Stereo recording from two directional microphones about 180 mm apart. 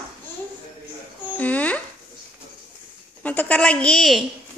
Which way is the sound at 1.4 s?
10° left (ahead or behind).